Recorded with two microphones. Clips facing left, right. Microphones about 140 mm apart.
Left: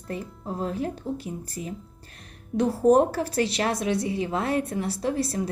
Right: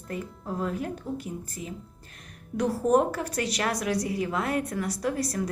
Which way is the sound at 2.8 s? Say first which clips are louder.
Left 5 dB; 35° left (ahead or behind).